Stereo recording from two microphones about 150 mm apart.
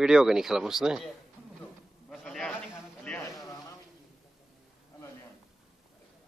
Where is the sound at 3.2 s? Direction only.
25° left (ahead or behind).